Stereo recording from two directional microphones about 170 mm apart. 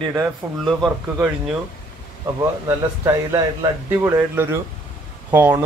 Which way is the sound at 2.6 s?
15° right (ahead or behind).